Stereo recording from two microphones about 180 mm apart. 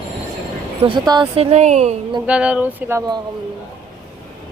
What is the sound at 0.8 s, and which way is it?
Speech, 25° right (ahead or behind).